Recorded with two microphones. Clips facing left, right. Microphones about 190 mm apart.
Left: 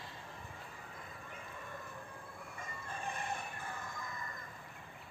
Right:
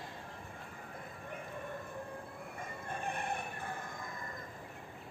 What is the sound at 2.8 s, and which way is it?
Fowl, 60° right (ahead or behind).